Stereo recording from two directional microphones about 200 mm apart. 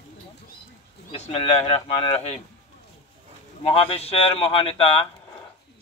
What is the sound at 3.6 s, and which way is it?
Speech, 30° left (ahead or behind).